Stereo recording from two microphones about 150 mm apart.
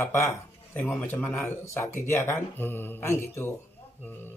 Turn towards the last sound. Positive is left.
turn(degrees=15)  # may be behind; listen again after turning